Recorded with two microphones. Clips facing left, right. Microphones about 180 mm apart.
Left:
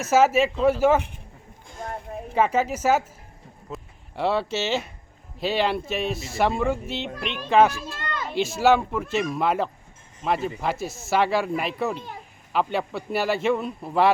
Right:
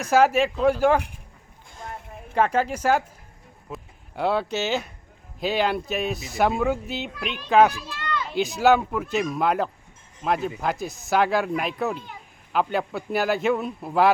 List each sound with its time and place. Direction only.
0.0 s speech: 5° left (ahead or behind)
2.3 s speech: 5° left (ahead or behind)
7.8 s a sound: 45° left (ahead or behind)
8.3 s speech: centre (ahead or behind)